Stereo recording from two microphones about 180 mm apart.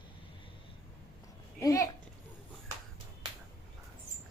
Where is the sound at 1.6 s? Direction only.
15° left (ahead or behind).